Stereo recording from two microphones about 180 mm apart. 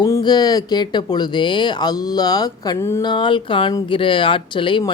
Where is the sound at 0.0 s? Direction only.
20° left (ahead or behind).